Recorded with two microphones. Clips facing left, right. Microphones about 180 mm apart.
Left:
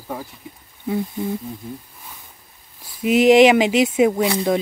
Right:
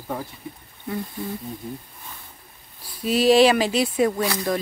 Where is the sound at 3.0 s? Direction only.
20° left (ahead or behind).